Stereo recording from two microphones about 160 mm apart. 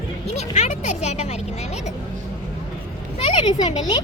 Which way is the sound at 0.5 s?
45° left (ahead or behind).